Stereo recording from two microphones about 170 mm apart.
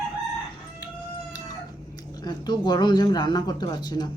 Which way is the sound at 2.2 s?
25° left (ahead or behind).